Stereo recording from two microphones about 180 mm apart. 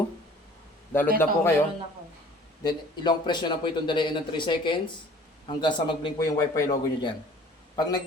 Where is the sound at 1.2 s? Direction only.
15° left (ahead or behind).